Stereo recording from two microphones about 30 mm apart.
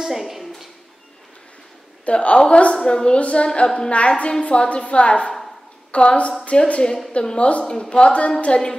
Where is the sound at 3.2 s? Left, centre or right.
Left.